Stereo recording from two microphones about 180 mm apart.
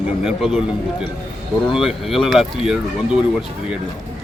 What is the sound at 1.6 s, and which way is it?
Speech, centre (ahead or behind).